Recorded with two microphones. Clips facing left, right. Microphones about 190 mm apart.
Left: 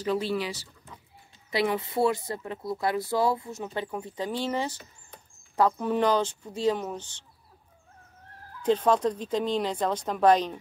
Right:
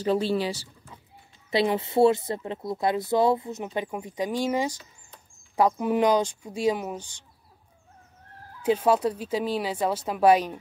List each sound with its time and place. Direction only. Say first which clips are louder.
0.0 s speech: right 4 dB; 30° right (ahead or behind); by 7.2 s 10° right (ahead or behind)
8.6 s speech: right 1 dB; 10° right (ahead or behind)